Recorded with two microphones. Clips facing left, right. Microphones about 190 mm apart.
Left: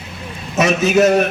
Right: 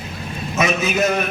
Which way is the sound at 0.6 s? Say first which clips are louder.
Left 5 dB; 40° left (ahead or behind).